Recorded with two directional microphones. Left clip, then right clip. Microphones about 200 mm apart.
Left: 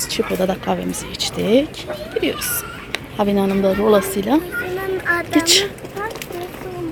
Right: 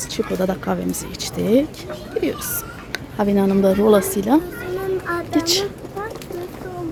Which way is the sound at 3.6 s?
20° right (ahead or behind).